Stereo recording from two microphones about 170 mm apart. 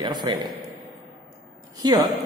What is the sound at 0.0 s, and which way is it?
Speech, 25° right (ahead or behind).